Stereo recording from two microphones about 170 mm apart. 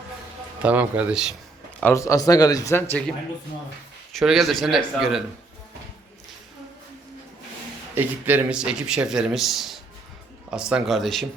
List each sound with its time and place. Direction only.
0.6 s a man's voice: 10° right (ahead or behind)
1.8 s speech: 15° left (ahead or behind)
4.1 s speech: centre (ahead or behind)
7.9 s speech: 10° right (ahead or behind)